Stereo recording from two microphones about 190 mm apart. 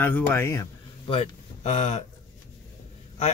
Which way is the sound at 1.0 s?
30° left (ahead or behind).